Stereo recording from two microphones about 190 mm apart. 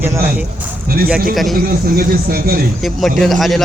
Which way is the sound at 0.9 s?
50° right (ahead or behind).